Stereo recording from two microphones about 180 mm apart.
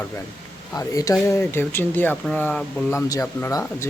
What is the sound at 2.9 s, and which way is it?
Speech, 15° left (ahead or behind).